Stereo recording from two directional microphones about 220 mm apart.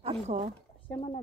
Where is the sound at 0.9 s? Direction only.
25° left (ahead or behind).